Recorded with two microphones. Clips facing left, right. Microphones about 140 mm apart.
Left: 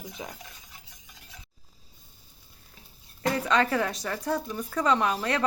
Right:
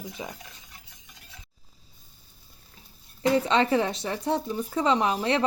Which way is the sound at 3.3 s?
25° right (ahead or behind).